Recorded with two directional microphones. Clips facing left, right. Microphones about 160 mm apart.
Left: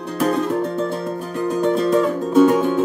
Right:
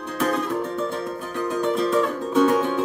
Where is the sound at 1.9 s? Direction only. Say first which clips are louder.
Left 5 dB; 35° left (ahead or behind).